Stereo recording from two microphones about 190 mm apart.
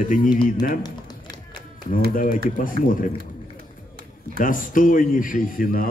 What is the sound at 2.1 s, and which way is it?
Speech, 45° left (ahead or behind).